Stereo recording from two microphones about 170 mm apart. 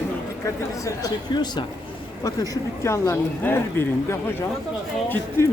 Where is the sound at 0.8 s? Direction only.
25° left (ahead or behind).